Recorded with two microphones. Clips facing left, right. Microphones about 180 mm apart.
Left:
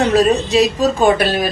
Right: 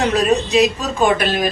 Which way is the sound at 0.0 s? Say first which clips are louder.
Left 3 dB; 35° left (ahead or behind).